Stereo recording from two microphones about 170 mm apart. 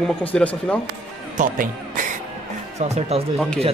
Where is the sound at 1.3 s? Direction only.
50° right (ahead or behind).